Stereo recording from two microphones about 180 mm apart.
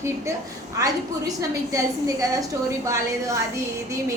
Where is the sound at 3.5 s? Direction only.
15° right (ahead or behind).